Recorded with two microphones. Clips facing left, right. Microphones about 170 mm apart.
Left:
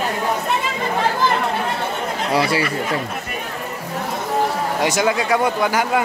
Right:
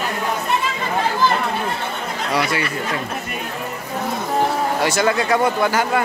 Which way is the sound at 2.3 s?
30° left (ahead or behind).